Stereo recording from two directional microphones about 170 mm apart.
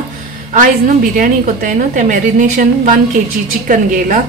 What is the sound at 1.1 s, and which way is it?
A woman's voice, 50° right (ahead or behind).